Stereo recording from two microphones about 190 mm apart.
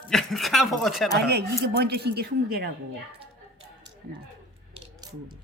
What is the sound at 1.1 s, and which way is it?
A woman's voice, 60° right (ahead or behind).